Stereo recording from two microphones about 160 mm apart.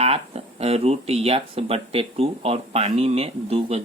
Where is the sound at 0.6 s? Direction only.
40° right (ahead or behind).